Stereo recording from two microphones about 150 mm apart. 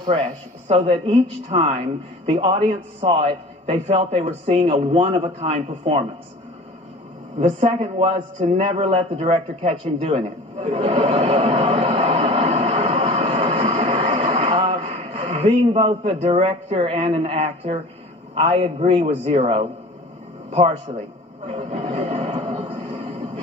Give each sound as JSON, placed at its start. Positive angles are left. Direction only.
{"t": 0.1, "sound": "speech", "side_deg": -45}
{"t": 7.3, "sound": "a man's voice", "side_deg": -40}
{"t": 22.4, "sound": "a sound", "side_deg": -30}